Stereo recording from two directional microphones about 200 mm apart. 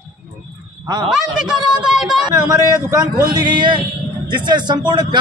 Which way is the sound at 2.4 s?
20° right (ahead or behind).